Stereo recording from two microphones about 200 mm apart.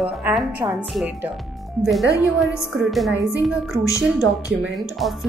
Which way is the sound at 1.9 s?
Centre (ahead or behind).